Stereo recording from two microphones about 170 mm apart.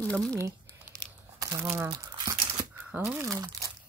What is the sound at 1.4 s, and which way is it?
Speech, 15° right (ahead or behind).